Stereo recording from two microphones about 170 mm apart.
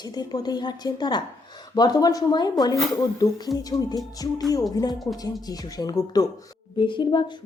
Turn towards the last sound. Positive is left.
turn(degrees=25)  # may be behind; listen again after turning